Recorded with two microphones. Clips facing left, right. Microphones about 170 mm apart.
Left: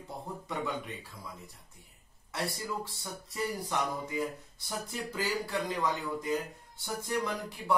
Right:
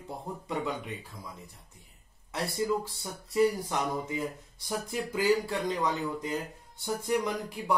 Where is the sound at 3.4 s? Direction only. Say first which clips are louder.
Right 7 dB; 15° right (ahead or behind).